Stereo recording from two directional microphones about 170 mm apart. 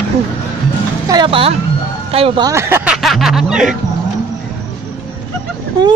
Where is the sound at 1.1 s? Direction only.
30° right (ahead or behind).